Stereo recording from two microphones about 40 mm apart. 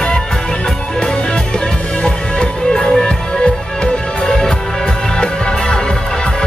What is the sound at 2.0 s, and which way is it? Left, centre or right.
Music, left.